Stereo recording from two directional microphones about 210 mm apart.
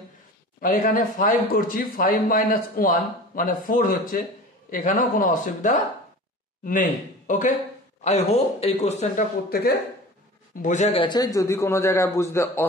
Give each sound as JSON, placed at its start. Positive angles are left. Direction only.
{"t": 0.6, "sound": "a man's voice", "side_deg": 40}
{"t": 10.6, "sound": "a man's voice", "side_deg": 35}